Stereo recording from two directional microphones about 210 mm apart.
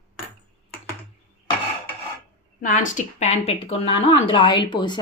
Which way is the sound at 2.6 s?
35° left (ahead or behind).